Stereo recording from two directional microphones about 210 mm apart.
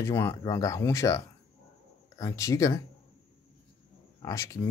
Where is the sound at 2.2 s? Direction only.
15° left (ahead or behind).